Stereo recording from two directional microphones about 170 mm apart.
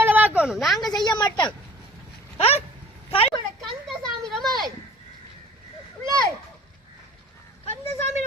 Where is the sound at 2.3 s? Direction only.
35° left (ahead or behind).